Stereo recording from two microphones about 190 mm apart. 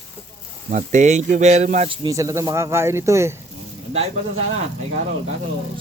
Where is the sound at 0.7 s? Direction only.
40° right (ahead or behind).